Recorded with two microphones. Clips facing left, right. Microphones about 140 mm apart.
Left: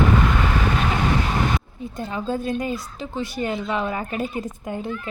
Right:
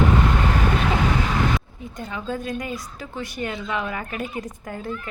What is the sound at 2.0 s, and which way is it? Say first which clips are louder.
A woman's voice: left 3 dB; 30° left (ahead or behind).